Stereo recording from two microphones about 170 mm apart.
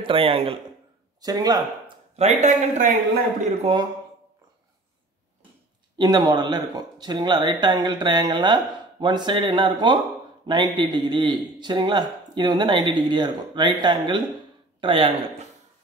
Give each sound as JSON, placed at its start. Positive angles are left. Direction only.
{"t": 0.0, "sound": "a man's voice", "side_deg": -30}
{"t": 1.2, "sound": "speech", "side_deg": -25}
{"t": 2.1, "sound": "a man's voice", "side_deg": -45}
{"t": 3.7, "sound": "a man's voice", "side_deg": -35}
{"t": 5.9, "sound": "a man's voice", "side_deg": -25}